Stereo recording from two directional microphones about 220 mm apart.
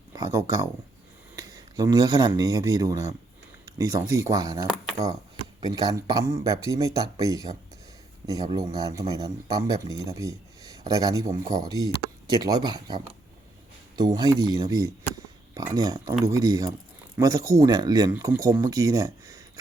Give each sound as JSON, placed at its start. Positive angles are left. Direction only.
{"t": 0.1, "sound": "speech", "side_deg": -15}